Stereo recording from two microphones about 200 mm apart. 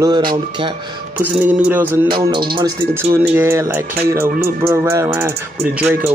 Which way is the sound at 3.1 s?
10° right (ahead or behind).